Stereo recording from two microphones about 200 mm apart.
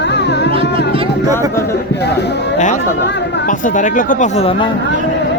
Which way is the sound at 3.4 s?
40° left (ahead or behind).